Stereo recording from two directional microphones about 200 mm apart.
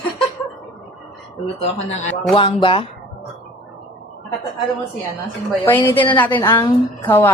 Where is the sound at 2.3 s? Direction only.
25° left (ahead or behind).